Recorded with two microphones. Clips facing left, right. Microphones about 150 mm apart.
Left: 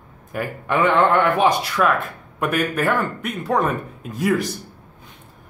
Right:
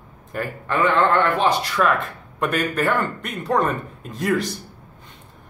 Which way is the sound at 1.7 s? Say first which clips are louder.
Left 1 dB; centre (ahead or behind).